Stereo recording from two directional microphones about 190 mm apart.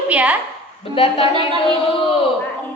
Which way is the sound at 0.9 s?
30° left (ahead or behind).